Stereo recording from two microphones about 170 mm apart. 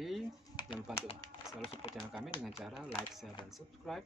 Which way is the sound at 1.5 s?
35° left (ahead or behind).